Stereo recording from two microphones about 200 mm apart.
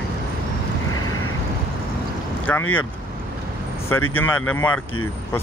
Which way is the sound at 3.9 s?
90° left.